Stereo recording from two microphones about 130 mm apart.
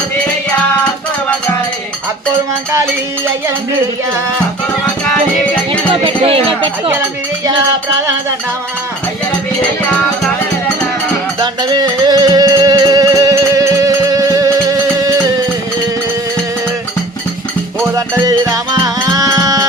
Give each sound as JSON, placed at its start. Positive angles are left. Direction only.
{"t": 5.9, "sound": "speech", "side_deg": -45}
{"t": 11.3, "sound": "music", "side_deg": -35}
{"t": 17.9, "sound": "music", "side_deg": -25}